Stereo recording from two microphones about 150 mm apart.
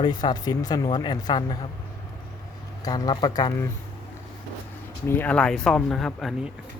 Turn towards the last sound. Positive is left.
turn(degrees=0)  # may be behind; listen again after turning